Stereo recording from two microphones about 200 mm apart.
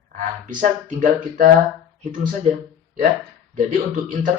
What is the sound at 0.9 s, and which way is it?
Speech, 40° right (ahead or behind).